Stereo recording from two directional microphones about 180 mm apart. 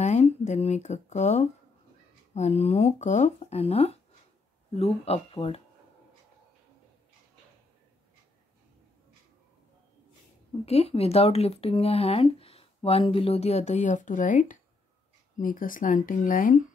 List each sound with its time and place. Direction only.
0.0 s speech: 40° left (ahead or behind)
10.6 s speech: 35° left (ahead or behind)